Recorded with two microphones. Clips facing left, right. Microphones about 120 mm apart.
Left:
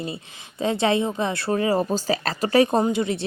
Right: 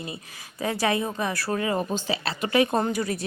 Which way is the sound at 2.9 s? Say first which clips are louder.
Left 4 dB; 25° left (ahead or behind).